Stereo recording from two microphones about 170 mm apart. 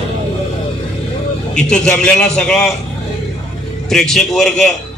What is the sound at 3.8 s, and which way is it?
Speech, centre (ahead or behind).